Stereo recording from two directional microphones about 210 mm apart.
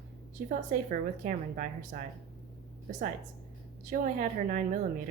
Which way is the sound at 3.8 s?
40° right (ahead or behind).